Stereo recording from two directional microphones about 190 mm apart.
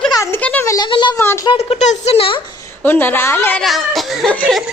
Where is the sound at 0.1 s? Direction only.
15° left (ahead or behind).